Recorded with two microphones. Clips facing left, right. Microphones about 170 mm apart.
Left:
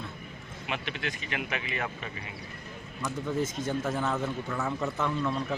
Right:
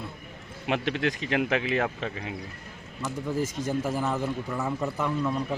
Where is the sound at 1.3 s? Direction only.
75° right (ahead or behind).